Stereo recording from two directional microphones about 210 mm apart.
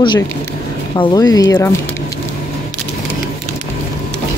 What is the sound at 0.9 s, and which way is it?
Speech, 20° left (ahead or behind).